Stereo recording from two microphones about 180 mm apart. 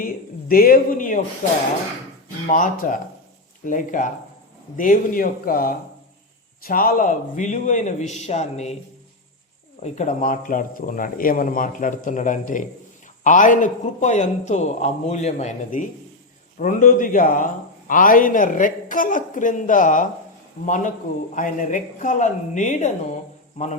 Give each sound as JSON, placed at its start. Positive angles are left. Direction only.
{"t": 0.0, "sound": "speech", "side_deg": 55}
{"t": 2.5, "sound": "a man's voice", "side_deg": 45}
{"t": 9.8, "sound": "a man's voice", "side_deg": 40}